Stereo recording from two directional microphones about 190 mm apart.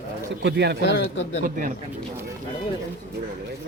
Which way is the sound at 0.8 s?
70° left (ahead or behind).